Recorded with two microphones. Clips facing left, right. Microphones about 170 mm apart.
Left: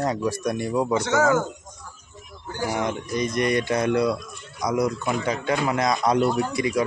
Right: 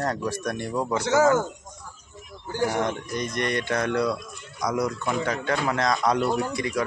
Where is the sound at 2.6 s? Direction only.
5° left (ahead or behind).